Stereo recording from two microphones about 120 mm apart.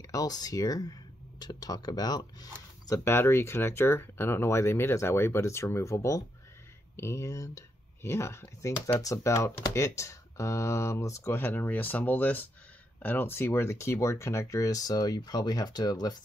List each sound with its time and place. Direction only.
0.0 s speech: 30° left (ahead or behind)
2.9 s speech: 20° left (ahead or behind)